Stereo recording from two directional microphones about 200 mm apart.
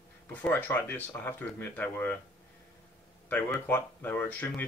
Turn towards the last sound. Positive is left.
turn(degrees=10)  # may be behind; listen again after turning